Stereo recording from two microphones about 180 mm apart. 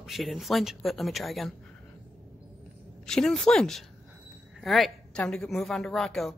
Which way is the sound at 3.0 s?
Centre (ahead or behind).